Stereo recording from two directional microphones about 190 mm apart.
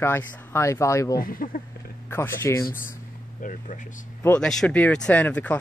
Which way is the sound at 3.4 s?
45° left (ahead or behind).